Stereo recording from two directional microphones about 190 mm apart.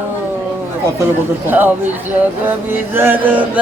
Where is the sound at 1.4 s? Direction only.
10° right (ahead or behind).